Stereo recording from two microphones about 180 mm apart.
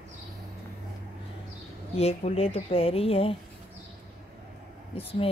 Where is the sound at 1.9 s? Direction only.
35° left (ahead or behind).